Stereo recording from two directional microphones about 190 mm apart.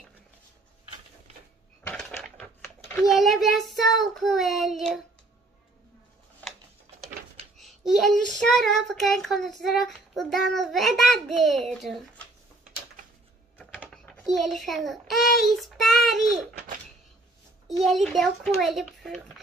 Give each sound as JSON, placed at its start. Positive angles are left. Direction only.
{"t": 2.0, "sound": "crushing", "side_deg": 0}
{"t": 3.0, "sound": "child singing", "side_deg": 0}
{"t": 7.5, "sound": "child singing", "side_deg": 0}
{"t": 14.0, "sound": "a child's voice", "side_deg": 0}
{"t": 17.6, "sound": "speech", "side_deg": 0}